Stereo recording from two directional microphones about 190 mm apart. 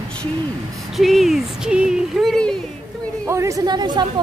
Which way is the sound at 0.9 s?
Centre (ahead or behind).